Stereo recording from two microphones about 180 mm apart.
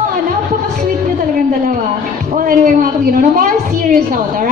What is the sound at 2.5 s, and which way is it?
A woman's voice, 50° right (ahead or behind).